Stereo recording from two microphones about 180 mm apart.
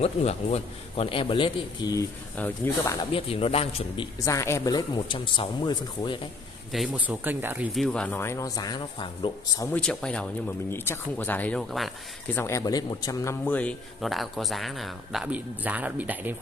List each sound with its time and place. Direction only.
0.0 s a man's voice: 35° left (ahead or behind)
2.3 s speech: 10° left (ahead or behind)
3.1 s a man's voice: 30° left (ahead or behind)
4.2 s a man's voice: 15° left (ahead or behind)
6.7 s a man's voice: 5° right (ahead or behind)
7.7 s speech: 5° left (ahead or behind); by 9.7 s 25° left (ahead or behind)
9.7 s a man's voice: 5° left (ahead or behind)
12.4 s a man's voice: 15° left (ahead or behind); by 16.3 s 10° right (ahead or behind)